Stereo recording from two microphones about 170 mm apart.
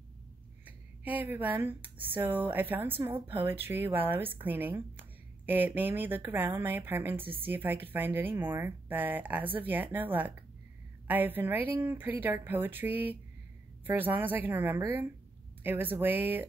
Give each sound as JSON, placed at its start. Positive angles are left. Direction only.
{"t": 0.7, "sound": "a woman's voice", "side_deg": -10}